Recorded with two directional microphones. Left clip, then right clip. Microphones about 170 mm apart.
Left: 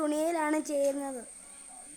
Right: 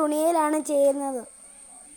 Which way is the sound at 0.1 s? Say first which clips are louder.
Right 7 dB; 20° right (ahead or behind).